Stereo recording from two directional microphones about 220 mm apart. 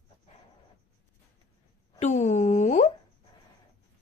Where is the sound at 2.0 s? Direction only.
35° left (ahead or behind).